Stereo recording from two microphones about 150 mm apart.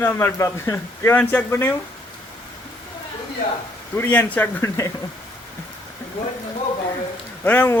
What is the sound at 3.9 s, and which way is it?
Speech, 15° left (ahead or behind).